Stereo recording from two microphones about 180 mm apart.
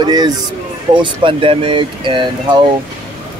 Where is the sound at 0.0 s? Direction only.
25° right (ahead or behind).